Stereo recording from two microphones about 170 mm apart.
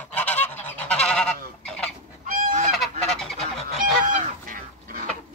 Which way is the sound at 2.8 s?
Centre (ahead or behind).